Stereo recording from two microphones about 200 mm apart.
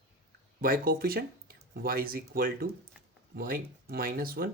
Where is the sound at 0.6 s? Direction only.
45° right (ahead or behind).